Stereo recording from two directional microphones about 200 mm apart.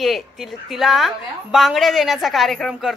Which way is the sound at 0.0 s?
Centre (ahead or behind).